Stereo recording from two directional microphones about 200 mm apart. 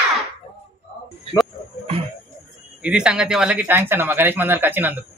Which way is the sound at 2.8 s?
5° right (ahead or behind).